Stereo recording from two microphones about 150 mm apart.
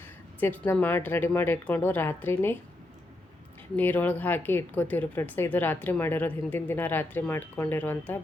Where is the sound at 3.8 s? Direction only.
10° left (ahead or behind).